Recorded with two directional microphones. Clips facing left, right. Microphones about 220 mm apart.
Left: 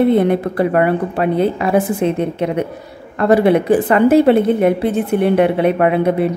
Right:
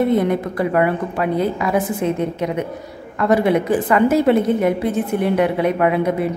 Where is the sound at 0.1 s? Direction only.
30° left (ahead or behind).